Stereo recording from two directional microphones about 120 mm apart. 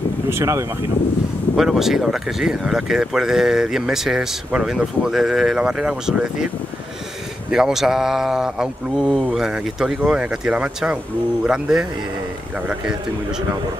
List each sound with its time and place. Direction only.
0.3 s speech: 25° right (ahead or behind)
1.6 s speech: 5° right (ahead or behind)
7.5 s a man's voice: 5° right (ahead or behind)